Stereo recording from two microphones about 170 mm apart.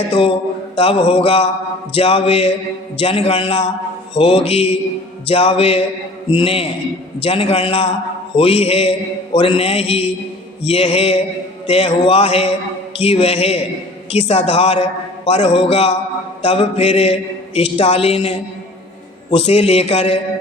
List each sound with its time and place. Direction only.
0.1 s mantra: 35° left (ahead or behind)